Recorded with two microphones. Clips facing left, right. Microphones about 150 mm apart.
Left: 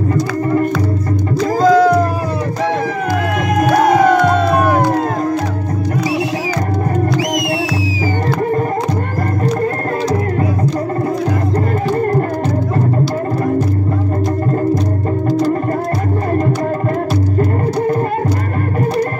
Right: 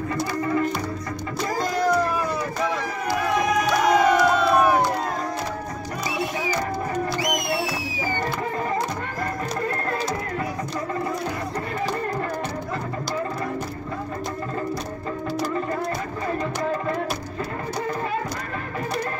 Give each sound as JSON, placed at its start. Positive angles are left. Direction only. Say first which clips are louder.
{"t": 0.1, "sound": "music", "louder": "left 7 dB", "side_deg": 45}
{"t": 1.7, "sound": "music", "louder": "left 13 dB", "side_deg": 90}
{"t": 3.5, "sound": "music", "louder": "left 10 dB", "side_deg": 55}